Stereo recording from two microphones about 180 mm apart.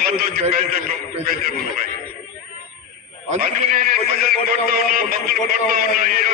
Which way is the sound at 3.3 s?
50° right (ahead or behind).